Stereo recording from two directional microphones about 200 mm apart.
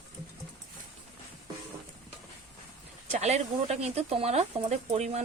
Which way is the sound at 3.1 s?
35° right (ahead or behind).